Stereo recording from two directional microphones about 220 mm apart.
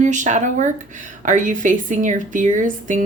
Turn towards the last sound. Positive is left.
turn(degrees=-35)  # may be behind; listen again after turning